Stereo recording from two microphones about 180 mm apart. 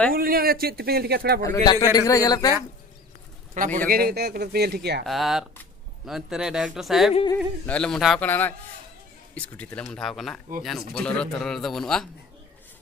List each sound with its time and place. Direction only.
0.1 s speech: 55° right (ahead or behind)
1.4 s a man's voice: 20° left (ahead or behind)
3.5 s speech: 45° right (ahead or behind); by 5.0 s 65° right (ahead or behind)
5.0 s a man's voice: centre (ahead or behind)